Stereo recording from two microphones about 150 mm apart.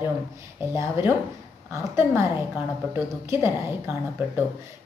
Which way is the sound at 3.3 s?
15° right (ahead or behind).